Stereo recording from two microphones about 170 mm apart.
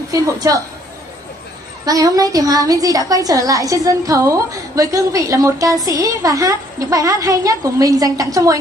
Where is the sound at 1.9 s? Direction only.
20° right (ahead or behind).